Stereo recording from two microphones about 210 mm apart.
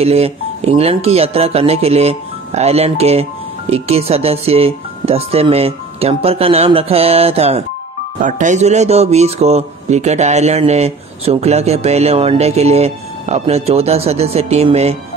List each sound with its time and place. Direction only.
0.0 s speech: 30° right (ahead or behind)